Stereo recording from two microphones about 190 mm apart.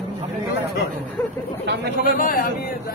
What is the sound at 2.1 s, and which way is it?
Speech, 45° left (ahead or behind).